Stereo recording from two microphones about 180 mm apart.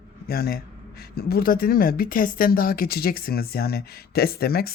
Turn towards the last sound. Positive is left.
turn(degrees=60)  # may be behind; listen again after turning